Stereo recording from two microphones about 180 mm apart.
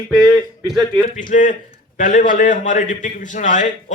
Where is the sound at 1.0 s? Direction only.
45° left (ahead or behind).